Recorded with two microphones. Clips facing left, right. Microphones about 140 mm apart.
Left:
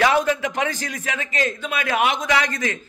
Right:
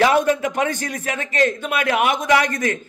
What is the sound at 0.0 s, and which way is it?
A man's voice, 45° right (ahead or behind).